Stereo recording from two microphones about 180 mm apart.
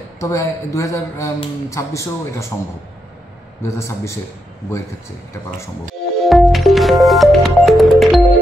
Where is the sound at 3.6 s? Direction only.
15° left (ahead or behind).